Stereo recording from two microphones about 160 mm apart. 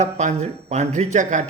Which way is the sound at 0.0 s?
45° right (ahead or behind).